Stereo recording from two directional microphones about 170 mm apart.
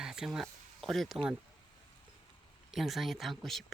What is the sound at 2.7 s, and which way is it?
Speech, centre (ahead or behind).